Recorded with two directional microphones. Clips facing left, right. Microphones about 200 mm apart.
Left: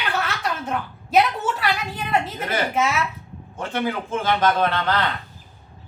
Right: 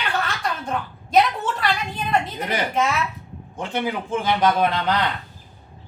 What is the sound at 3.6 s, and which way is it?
A man's voice, 15° right (ahead or behind).